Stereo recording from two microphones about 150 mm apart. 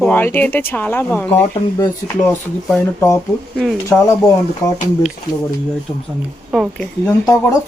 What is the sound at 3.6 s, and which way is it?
Speech, centre (ahead or behind).